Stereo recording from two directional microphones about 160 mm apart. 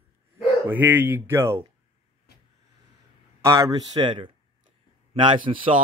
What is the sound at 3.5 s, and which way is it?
A man's voice, 20° right (ahead or behind).